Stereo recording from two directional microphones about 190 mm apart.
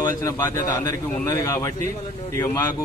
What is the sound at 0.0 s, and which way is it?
Speech, 15° left (ahead or behind).